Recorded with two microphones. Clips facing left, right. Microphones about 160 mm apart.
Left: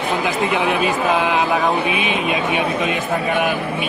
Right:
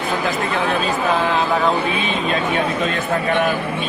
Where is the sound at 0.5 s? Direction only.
15° left (ahead or behind).